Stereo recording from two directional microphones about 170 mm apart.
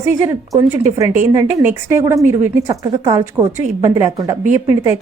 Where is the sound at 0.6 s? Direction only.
20° right (ahead or behind).